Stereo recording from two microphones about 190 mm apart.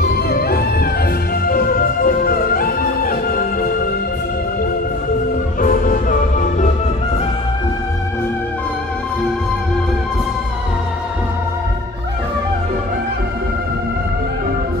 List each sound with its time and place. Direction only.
0.0 s music: 55° left (ahead or behind)
5.6 s music: 45° left (ahead or behind)